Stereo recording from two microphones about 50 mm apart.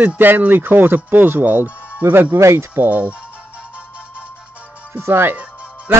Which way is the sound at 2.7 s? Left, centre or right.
Right.